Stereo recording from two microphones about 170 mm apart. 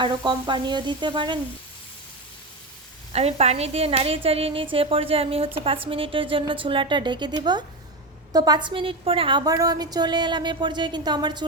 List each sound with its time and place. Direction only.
0.0 s a woman's voice: 25° right (ahead or behind)
3.1 s a woman's voice: 40° right (ahead or behind)